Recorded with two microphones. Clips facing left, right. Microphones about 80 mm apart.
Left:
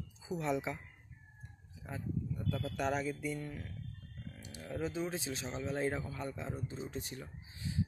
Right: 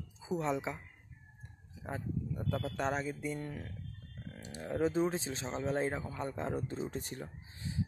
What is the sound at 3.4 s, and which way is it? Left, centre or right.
Speech, right.